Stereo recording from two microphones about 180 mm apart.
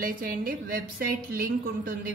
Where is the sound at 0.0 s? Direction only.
55° right (ahead or behind).